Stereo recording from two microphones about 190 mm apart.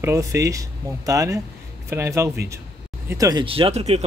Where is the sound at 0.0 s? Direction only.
15° right (ahead or behind).